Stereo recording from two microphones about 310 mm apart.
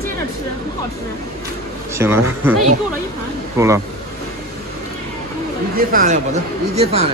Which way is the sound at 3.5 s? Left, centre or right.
Centre.